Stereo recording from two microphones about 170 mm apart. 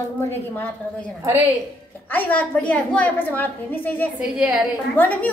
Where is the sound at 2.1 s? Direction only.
10° left (ahead or behind).